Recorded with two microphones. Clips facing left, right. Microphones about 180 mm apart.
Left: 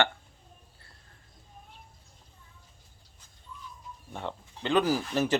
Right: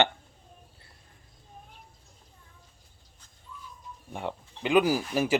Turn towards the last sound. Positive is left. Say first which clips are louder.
# right 1 dB
turn(degrees=-10)  # may be behind; listen again after turning